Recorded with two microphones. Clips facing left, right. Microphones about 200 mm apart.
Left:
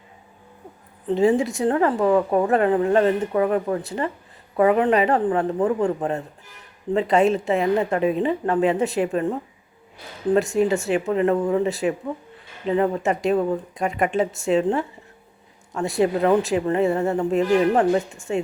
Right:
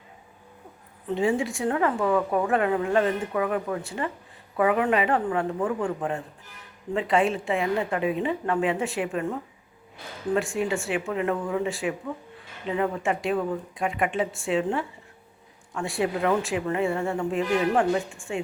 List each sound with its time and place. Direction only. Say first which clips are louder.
1.0 s a woman's voice: left 6 dB; 35° left (ahead or behind)